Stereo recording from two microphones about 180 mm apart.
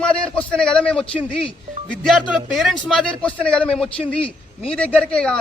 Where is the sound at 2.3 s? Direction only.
Centre (ahead or behind).